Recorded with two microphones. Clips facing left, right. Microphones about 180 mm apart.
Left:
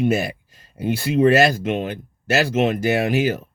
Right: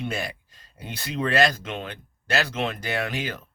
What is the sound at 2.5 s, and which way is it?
Speech, 45° left (ahead or behind).